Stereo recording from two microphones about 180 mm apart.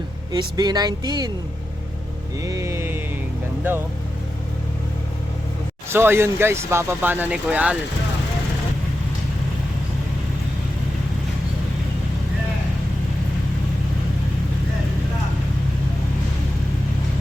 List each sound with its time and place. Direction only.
0.3 s speech: 20° right (ahead or behind)
2.4 s speech: 20° right (ahead or behind)
5.9 s speech: 15° right (ahead or behind)